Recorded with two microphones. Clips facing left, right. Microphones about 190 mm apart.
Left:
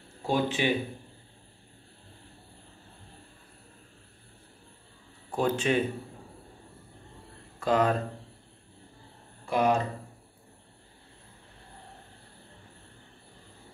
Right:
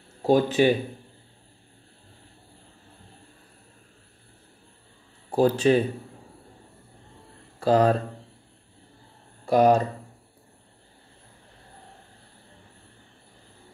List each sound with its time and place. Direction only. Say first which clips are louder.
0.2 s speech: right 8 dB; 40° right (ahead or behind)
5.3 s speech: right 7 dB; 35° right (ahead or behind)
7.6 s speech: right 5 dB; 35° right (ahead or behind)
9.5 s speech: right 7 dB; 40° right (ahead or behind)